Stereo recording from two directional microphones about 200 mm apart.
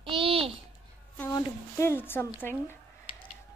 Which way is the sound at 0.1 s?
25° right (ahead or behind).